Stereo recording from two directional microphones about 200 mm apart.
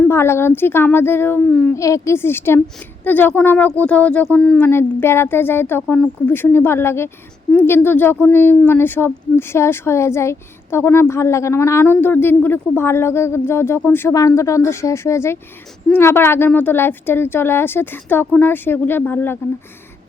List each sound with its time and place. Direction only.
0.1 s speech: 10° left (ahead or behind)